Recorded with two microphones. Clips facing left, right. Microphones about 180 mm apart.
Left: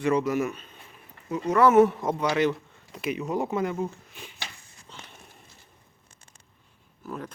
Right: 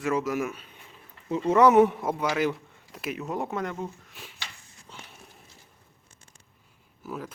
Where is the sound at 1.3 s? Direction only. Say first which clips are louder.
Right 1 dB; 25° right (ahead or behind); by 4.4 s centre (ahead or behind).